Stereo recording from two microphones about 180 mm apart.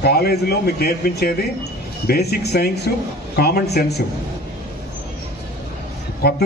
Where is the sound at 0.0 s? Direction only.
60° left (ahead or behind).